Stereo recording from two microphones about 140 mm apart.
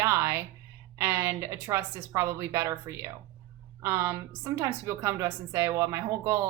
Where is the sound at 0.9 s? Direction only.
20° right (ahead or behind).